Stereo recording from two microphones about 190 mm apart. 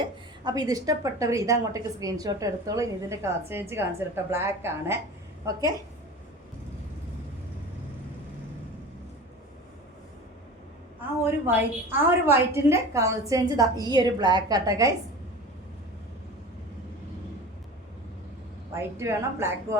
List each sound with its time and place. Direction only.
0.0 s a woman's voice: 20° right (ahead or behind)
11.3 s a woman's voice: 10° right (ahead or behind)
18.7 s a woman's voice: 15° right (ahead or behind)